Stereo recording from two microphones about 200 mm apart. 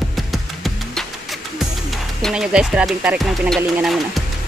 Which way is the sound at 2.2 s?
Centre (ahead or behind).